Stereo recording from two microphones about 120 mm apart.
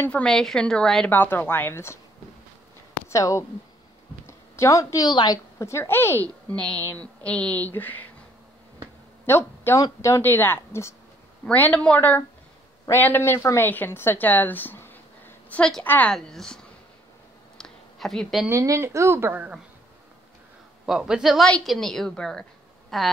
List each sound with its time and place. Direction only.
0.0 s a woman's voice: 10° left (ahead or behind)
1.1 s speech: 15° left (ahead or behind)
3.1 s a woman's voice: 25° left (ahead or behind)
9.2 s a woman's voice: 20° left (ahead or behind)
16.2 s a man's voice: 5° left (ahead or behind)
17.6 s a sound: 5° left (ahead or behind)
18.5 s a woman's voice: 25° right (ahead or behind)
20.8 s a man's voice: 5° right (ahead or behind)